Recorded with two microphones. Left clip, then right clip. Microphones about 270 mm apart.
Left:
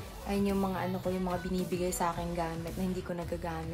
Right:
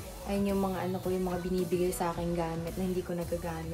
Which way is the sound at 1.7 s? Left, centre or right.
Centre.